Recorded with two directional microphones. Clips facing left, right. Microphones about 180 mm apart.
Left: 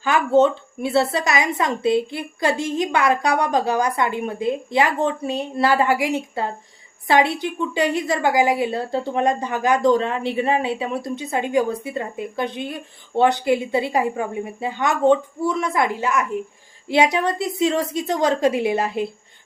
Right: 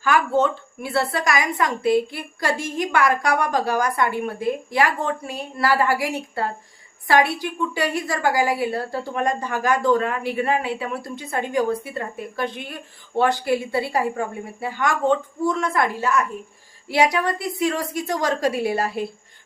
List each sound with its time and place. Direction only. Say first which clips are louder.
0.0 s a woman's voice: left 3 dB; 25° left (ahead or behind)